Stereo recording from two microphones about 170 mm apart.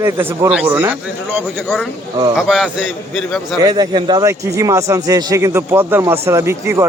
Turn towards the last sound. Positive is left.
turn(degrees=-15)  # may be behind; listen again after turning